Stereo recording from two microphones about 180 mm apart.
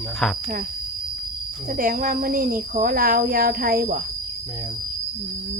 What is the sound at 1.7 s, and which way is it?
Speech, 50° right (ahead or behind).